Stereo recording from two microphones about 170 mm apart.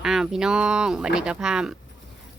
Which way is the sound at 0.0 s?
5° right (ahead or behind).